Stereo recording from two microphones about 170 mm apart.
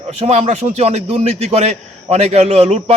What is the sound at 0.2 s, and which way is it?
A man's voice, 40° right (ahead or behind).